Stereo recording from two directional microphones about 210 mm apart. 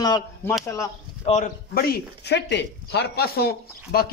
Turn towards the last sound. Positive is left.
turn(degrees=45)  # may be behind; listen again after turning